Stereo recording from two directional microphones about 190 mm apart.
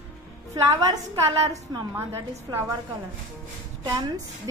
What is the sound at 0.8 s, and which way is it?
Speech, 15° right (ahead or behind).